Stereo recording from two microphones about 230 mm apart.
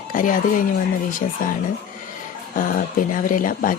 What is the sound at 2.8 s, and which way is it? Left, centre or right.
Speech, left.